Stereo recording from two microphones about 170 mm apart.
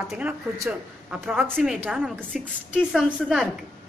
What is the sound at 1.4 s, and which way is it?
A woman's voice, centre (ahead or behind).